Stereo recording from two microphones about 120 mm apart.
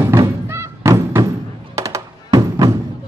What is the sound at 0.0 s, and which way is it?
Music, 25° right (ahead or behind).